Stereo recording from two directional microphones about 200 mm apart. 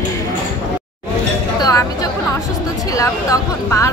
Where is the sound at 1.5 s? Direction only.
20° left (ahead or behind).